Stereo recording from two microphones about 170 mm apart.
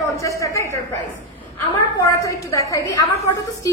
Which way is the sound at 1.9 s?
20° left (ahead or behind).